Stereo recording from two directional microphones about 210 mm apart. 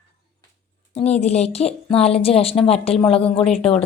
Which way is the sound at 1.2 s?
30° left (ahead or behind).